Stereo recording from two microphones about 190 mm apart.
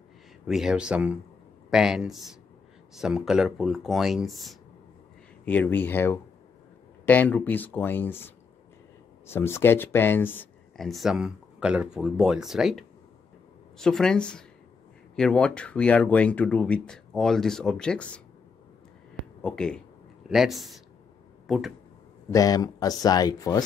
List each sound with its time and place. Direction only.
0.5 s speech: 5° right (ahead or behind)
9.3 s speech: 10° left (ahead or behind)
19.4 s speech: 5° left (ahead or behind)
22.3 s speech: 20° left (ahead or behind)